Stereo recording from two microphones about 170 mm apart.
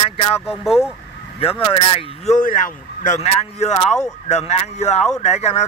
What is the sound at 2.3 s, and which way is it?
A man's voice, 50° left (ahead or behind).